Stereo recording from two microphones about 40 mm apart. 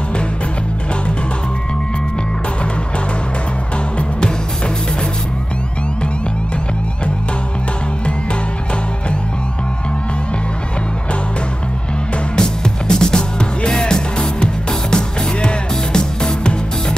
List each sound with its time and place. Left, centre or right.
12.4 s music: centre